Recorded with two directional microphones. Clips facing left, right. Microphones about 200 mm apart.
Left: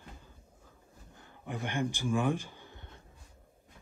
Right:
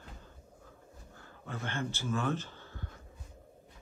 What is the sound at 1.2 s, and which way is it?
Speech, 15° left (ahead or behind).